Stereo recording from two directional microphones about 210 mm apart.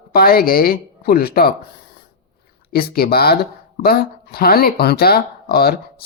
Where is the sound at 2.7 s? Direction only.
45° left (ahead or behind).